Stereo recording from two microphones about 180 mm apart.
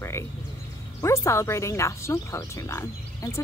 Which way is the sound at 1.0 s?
15° left (ahead or behind).